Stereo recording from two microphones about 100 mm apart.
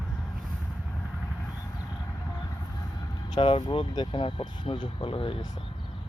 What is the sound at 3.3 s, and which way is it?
Speech, 65° left (ahead or behind).